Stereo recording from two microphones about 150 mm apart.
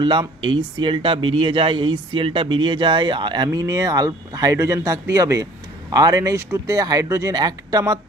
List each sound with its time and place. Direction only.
0.0 s speech: 35° right (ahead or behind)